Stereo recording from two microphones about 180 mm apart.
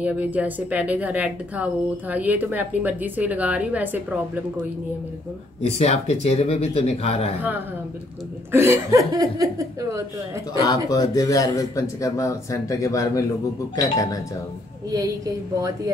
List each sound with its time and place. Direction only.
0.0 s a woman's voice: 10° right (ahead or behind)
5.6 s speech: 35° left (ahead or behind)
8.5 s a woman's voice: 15° right (ahead or behind)
10.5 s speech: 20° left (ahead or behind)